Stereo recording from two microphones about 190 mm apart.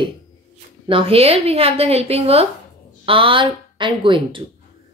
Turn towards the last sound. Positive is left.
turn(degrees=-25)  # may be behind; listen again after turning